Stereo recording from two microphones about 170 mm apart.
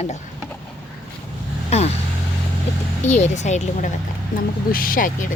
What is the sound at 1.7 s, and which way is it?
Vehicle, 40° left (ahead or behind).